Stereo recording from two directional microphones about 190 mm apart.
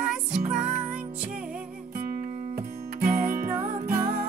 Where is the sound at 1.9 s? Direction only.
50° right (ahead or behind).